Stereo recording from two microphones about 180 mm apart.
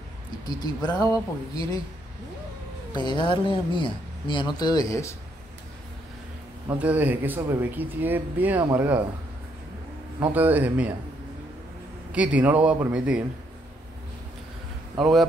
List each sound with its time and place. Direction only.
0.5 s speech: 20° left (ahead or behind)
2.9 s speech: 25° left (ahead or behind)
6.8 s speech: 10° right (ahead or behind)
10.3 s speech: 10° right (ahead or behind)
12.1 s speech: 5° right (ahead or behind)
15.0 s speech: centre (ahead or behind)